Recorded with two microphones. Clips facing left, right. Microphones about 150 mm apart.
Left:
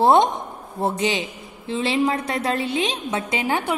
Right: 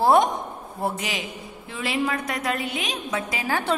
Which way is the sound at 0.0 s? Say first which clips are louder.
Left 2 dB; 25° left (ahead or behind).